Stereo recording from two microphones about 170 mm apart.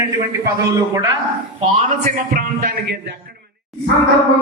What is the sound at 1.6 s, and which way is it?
A man's voice, 40° right (ahead or behind).